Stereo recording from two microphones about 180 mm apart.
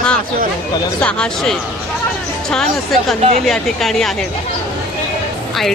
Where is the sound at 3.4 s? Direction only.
Centre (ahead or behind).